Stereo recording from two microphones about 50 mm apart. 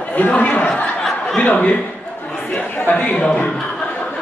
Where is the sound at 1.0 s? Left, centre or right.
Centre.